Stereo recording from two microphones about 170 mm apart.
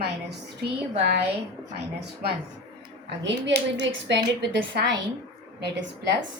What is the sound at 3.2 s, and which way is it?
Speech, 90° right.